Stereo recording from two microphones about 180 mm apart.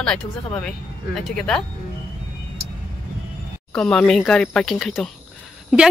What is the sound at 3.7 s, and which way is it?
Speech, 5° left (ahead or behind).